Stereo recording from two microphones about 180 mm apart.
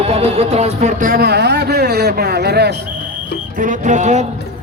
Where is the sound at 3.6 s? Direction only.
45° right (ahead or behind).